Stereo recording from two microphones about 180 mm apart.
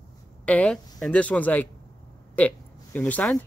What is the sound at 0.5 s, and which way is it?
Speech, 5° left (ahead or behind).